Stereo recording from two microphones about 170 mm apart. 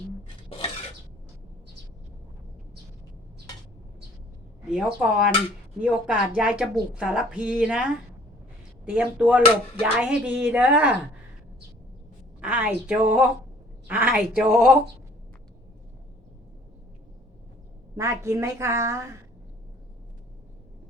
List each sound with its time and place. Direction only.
4.7 s a woman's voice: 5° right (ahead or behind)
12.4 s a woman's voice: 10° right (ahead or behind)
17.9 s a woman's voice: 15° right (ahead or behind)